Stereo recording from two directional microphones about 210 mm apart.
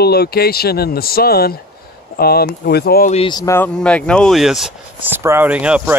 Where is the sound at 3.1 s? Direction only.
25° left (ahead or behind).